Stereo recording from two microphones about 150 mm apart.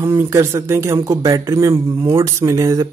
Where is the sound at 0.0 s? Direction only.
15° right (ahead or behind).